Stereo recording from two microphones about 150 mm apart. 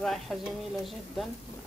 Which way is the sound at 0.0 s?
Centre (ahead or behind).